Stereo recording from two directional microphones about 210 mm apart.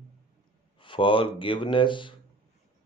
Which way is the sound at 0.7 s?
25° left (ahead or behind).